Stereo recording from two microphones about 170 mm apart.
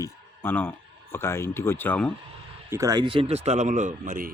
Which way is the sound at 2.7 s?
20° right (ahead or behind).